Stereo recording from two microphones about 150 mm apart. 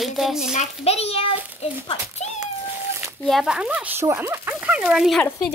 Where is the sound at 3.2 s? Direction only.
Centre (ahead or behind).